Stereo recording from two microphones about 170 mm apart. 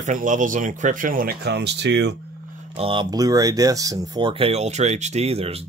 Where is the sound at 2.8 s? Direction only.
30° right (ahead or behind).